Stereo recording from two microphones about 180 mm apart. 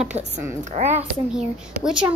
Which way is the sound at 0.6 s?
40° right (ahead or behind).